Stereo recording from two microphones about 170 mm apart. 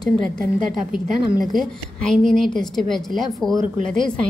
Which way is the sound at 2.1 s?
5° left (ahead or behind).